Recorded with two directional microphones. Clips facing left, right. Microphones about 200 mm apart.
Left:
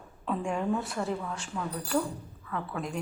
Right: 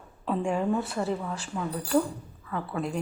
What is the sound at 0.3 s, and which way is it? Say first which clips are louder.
A woman's voice: right 3 dB; centre (ahead or behind).